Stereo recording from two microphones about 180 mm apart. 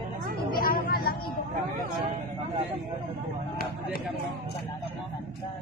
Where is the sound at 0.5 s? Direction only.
55° left (ahead or behind).